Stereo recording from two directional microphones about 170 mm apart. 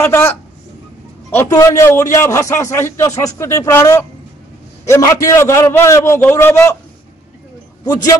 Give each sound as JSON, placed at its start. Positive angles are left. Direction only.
{"t": 0.0, "sound": "a man's voice", "side_deg": 15}
{"t": 7.8, "sound": "a man's voice", "side_deg": 20}